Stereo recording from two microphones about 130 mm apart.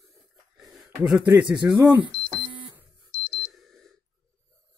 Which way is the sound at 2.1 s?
15° left (ahead or behind).